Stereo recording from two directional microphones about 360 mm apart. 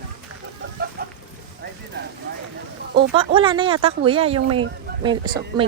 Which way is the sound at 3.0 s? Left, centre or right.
Centre.